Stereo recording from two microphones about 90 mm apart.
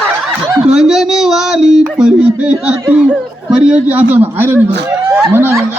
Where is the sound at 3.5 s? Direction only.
10° right (ahead or behind).